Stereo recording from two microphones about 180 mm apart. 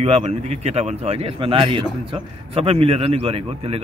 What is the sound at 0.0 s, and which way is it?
Speech, 35° right (ahead or behind).